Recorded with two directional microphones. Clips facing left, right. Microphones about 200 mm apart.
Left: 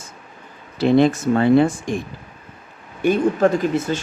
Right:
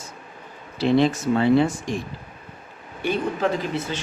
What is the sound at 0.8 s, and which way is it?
Speech, 50° left (ahead or behind).